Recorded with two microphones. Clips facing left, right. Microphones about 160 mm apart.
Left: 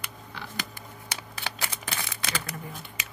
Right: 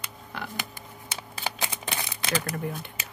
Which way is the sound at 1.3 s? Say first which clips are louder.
Right 4 dB; 20° right (ahead or behind).